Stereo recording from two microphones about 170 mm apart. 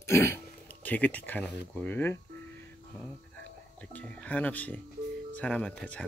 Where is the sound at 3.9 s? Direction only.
10° left (ahead or behind).